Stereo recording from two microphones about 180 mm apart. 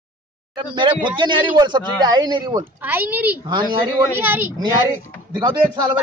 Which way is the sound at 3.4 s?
25° right (ahead or behind).